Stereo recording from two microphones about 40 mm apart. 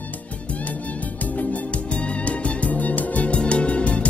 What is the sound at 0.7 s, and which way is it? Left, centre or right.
Music, left.